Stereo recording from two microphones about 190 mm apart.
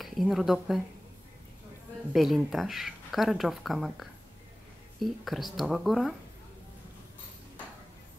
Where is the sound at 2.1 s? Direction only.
Centre (ahead or behind).